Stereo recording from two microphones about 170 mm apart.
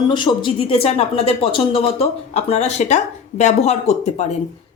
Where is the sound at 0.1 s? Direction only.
25° left (ahead or behind).